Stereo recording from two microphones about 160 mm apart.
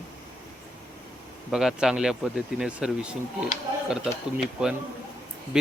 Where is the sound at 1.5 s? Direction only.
Centre (ahead or behind).